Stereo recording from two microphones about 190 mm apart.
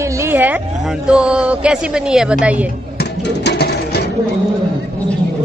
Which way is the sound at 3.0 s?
60° left (ahead or behind).